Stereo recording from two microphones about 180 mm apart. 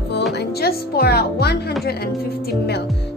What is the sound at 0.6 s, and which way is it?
Speech, 60° left (ahead or behind).